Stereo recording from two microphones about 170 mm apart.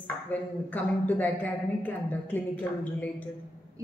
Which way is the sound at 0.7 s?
10° left (ahead or behind).